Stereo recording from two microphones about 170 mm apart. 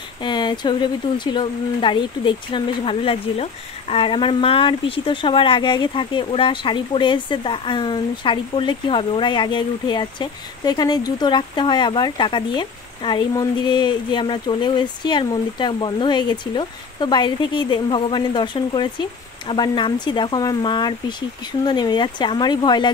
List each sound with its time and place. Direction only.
0.2 s speech: 25° left (ahead or behind)